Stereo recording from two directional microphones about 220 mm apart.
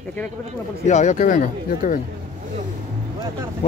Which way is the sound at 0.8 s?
35° left (ahead or behind).